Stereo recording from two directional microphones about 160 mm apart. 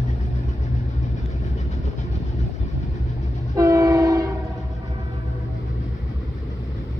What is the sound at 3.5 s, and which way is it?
Train, 20° right (ahead or behind).